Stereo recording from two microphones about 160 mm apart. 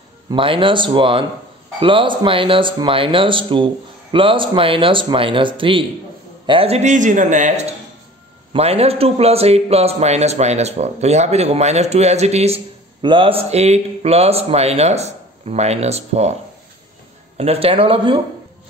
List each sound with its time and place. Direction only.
0.3 s a man's voice: 35° right (ahead or behind)
17.4 s speech: 35° right (ahead or behind)